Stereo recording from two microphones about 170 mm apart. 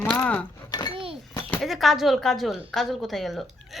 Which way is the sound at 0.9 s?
30° right (ahead or behind).